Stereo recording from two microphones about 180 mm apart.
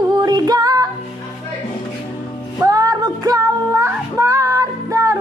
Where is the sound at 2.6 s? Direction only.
20° right (ahead or behind).